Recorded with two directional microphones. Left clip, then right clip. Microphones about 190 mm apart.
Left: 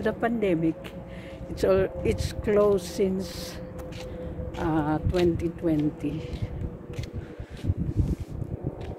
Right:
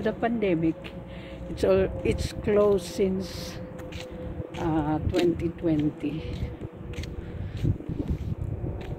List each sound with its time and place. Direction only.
0.0 s speech: 10° right (ahead or behind)
4.6 s speech: centre (ahead or behind)